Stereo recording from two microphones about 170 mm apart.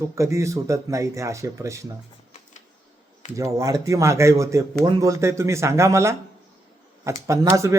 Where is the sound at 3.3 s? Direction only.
20° right (ahead or behind).